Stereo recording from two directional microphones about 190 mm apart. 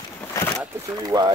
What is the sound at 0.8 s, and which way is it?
Speech, 20° right (ahead or behind).